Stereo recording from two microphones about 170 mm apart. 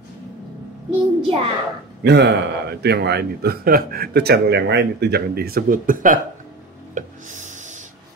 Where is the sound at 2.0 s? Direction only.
80° right; by 6.1 s 50° right (ahead or behind).